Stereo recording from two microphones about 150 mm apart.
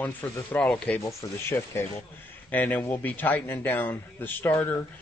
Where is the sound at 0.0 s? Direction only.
10° left (ahead or behind).